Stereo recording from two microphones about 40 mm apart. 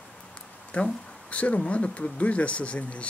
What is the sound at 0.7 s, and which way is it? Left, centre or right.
Speech, left.